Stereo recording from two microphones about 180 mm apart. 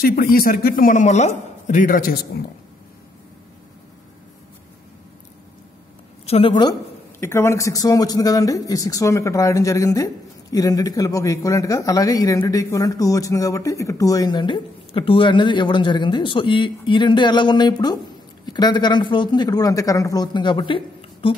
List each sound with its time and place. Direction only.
0.0 s a man's voice: 55° left (ahead or behind)
6.2 s speech: 35° left (ahead or behind)
6.6 s a woman's voice: 15° left (ahead or behind)